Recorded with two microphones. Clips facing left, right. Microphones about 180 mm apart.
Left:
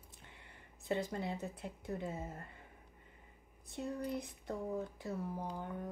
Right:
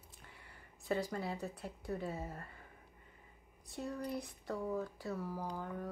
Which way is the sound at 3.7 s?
20° left (ahead or behind).